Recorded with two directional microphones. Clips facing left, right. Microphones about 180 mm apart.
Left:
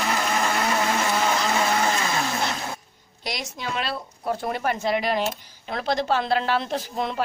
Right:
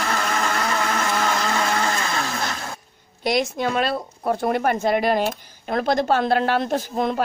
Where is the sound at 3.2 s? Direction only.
50° right (ahead or behind).